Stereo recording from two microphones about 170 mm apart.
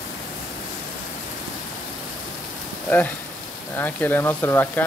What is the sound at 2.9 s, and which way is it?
Speech, 10° left (ahead or behind).